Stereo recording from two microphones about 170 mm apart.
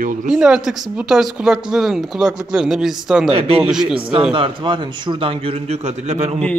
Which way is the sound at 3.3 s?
35° right (ahead or behind).